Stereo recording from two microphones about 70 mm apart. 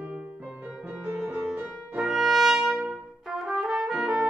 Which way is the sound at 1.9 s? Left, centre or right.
Centre.